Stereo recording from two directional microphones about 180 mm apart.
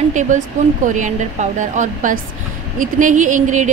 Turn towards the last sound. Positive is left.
turn(degrees=-45)  # may be behind; listen again after turning